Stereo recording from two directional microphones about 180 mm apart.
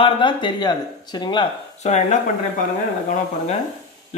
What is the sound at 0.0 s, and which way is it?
Speech, 25° left (ahead or behind).